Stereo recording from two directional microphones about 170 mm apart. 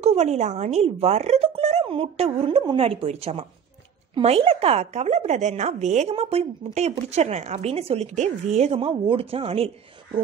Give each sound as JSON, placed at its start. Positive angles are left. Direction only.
{"t": 0.0, "sound": "a woman's voice", "side_deg": -40}